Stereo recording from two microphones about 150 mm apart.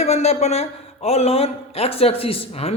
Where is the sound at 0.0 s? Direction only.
45° left (ahead or behind).